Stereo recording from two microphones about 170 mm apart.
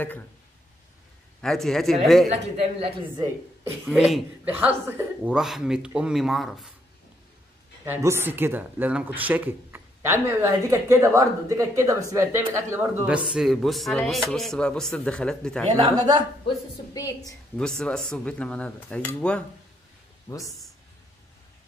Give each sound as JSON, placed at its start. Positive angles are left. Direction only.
{"t": 1.4, "sound": "speech", "side_deg": 5}
{"t": 2.5, "sound": "a woman's voice", "side_deg": -35}
{"t": 3.8, "sound": "speech", "side_deg": -5}
{"t": 7.8, "sound": "speech", "side_deg": -15}
{"t": 15.7, "sound": "speech", "side_deg": -25}
{"t": 16.4, "sound": "a woman's voice", "side_deg": 20}
{"t": 17.6, "sound": "speech", "side_deg": 5}
{"t": 20.2, "sound": "speech", "side_deg": 20}